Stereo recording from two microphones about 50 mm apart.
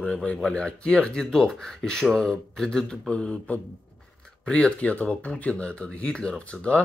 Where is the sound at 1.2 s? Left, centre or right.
Centre.